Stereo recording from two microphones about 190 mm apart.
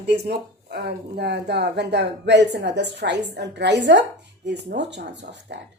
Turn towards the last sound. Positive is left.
turn(degrees=-65)  # may be behind; listen again after turning